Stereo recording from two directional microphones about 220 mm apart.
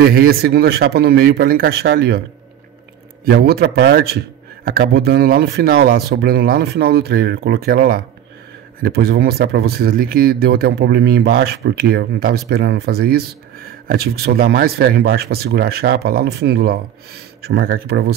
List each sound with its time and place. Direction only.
0.0 s speech: 45° right (ahead or behind)
3.3 s speech: 45° right (ahead or behind)